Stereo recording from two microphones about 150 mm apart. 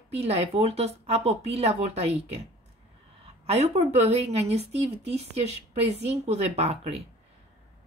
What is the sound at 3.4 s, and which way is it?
Speech, 45° right (ahead or behind).